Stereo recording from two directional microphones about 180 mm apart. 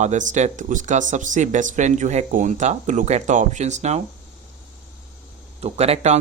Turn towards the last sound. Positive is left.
turn(degrees=-35)  # may be behind; listen again after turning